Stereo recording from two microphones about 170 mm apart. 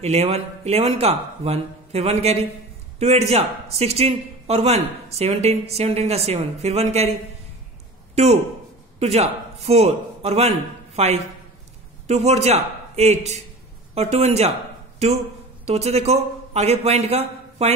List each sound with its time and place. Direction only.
0.0 s a man's voice: 40° right (ahead or behind)
15.6 s a man's voice: 40° right (ahead or behind)